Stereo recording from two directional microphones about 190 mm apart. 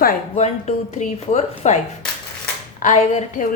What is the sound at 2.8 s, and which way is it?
Speech, 40° left (ahead or behind).